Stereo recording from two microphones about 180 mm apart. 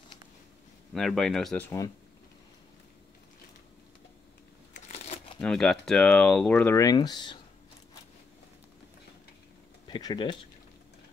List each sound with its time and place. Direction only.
0.9 s speech: centre (ahead or behind)
4.8 s crumpling: 40° left (ahead or behind)
5.4 s speech: 5° left (ahead or behind); by 7.3 s 25° left (ahead or behind)
9.8 s speech: 25° left (ahead or behind)